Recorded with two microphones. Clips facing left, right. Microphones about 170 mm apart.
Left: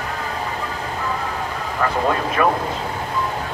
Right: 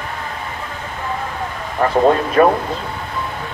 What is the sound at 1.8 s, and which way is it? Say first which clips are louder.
Vehicle: right 4 dB; 35° right (ahead or behind).